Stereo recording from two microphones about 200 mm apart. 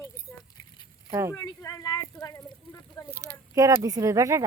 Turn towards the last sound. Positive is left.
turn(degrees=-15)  # may be behind; listen again after turning